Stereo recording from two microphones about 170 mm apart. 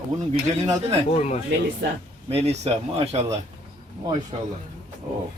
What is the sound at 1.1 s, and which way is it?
Speech, 40° left (ahead or behind).